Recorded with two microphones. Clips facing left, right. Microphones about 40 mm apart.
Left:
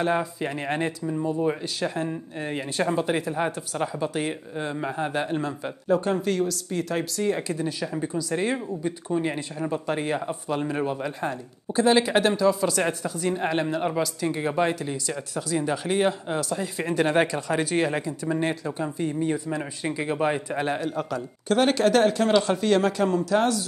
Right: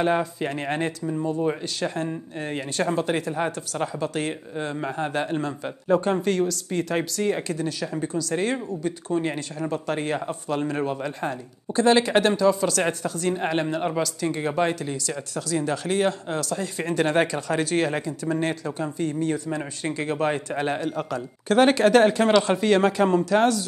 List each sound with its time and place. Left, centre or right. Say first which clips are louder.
0.2 s speech: right 2 dB; centre
6.0 s speech: right 2 dB; centre
7.5 s speech: right 1 dB; centre
8.1 s speech: right 1 dB; centre
8.4 s speech: even; centre
15.0 s speech: even; centre
21.5 s speech: right 3 dB; centre